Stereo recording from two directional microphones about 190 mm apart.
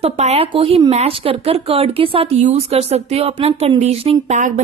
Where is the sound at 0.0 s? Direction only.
35° right (ahead or behind).